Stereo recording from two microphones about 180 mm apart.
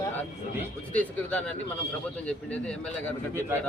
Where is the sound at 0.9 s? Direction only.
10° left (ahead or behind).